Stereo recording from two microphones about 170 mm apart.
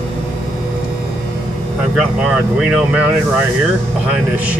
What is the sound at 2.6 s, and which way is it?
Speech, 5° right (ahead or behind).